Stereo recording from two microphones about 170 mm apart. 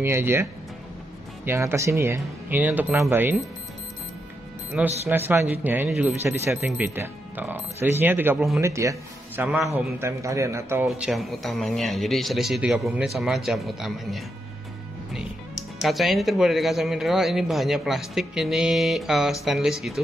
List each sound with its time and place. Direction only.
0.0 s speech: 15° right (ahead or behind)
5.0 s speech: 15° right (ahead or behind)
10.9 s speech: centre (ahead or behind)
15.8 s speech: centre (ahead or behind)